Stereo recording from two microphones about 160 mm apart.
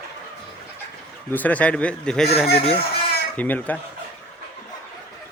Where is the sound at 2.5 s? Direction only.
40° left (ahead or behind).